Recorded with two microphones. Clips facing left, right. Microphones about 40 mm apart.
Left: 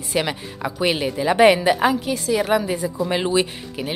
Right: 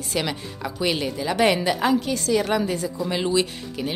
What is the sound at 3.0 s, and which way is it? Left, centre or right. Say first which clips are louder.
Speech: left 2 dB; left.